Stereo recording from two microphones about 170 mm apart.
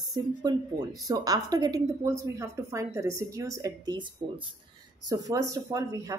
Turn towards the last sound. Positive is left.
turn(degrees=-20)  # may be behind; listen again after turning